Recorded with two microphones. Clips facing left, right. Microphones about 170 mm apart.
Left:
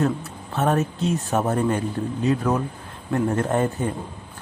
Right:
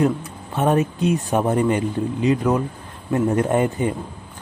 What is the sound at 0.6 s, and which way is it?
A man's voice, 15° right (ahead or behind).